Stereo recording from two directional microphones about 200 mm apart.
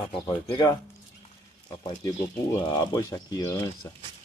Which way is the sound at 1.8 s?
20° left (ahead or behind).